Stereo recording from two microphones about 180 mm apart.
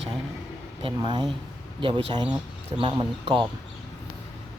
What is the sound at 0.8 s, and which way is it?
A man's voice, 30° right (ahead or behind).